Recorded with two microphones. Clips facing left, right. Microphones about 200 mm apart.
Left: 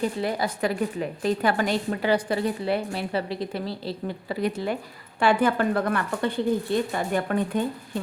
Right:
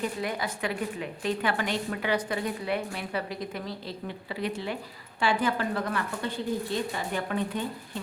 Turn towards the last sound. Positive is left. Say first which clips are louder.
# left 6 dB
turn(degrees=50)  # may be behind; listen again after turning